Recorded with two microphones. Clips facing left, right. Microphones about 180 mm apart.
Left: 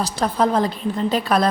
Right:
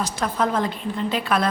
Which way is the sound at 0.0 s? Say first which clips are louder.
Left 4 dB; 35° left (ahead or behind).